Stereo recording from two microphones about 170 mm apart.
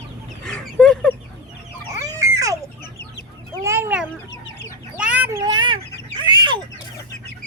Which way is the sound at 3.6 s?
15° right (ahead or behind).